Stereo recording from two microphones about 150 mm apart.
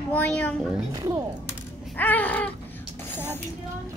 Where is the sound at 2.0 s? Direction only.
10° left (ahead or behind).